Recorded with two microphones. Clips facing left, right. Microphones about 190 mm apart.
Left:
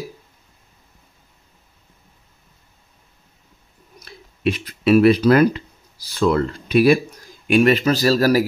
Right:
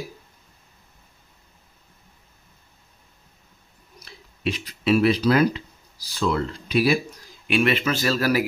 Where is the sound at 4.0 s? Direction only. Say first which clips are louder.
Left 6 dB; 55° left (ahead or behind).